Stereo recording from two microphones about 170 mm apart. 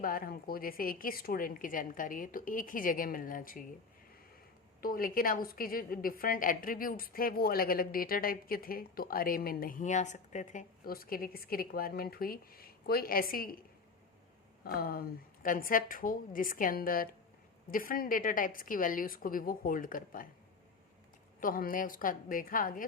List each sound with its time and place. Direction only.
0.0 s a woman's voice: 60° left (ahead or behind)
4.8 s a woman's voice: 55° left (ahead or behind)
14.6 s a woman's voice: 60° left (ahead or behind)
21.4 s a woman's voice: 55° left (ahead or behind)